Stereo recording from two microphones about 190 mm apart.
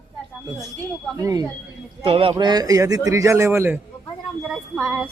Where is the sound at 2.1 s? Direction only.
30° right (ahead or behind); by 3.8 s 15° right (ahead or behind).